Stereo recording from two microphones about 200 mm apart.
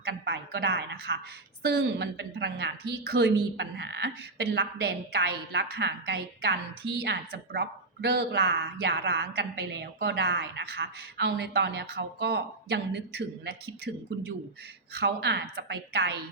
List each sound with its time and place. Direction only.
0.0 s a woman's voice: 55° right (ahead or behind)